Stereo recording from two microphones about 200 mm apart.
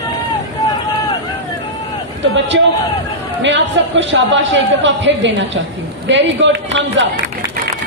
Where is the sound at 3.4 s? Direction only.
70° right (ahead or behind).